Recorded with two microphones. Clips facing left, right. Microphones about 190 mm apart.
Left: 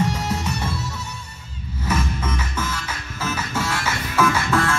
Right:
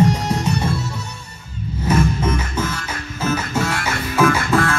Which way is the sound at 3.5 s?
15° right (ahead or behind).